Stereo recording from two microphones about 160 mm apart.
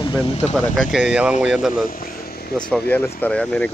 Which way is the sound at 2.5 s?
5° left (ahead or behind).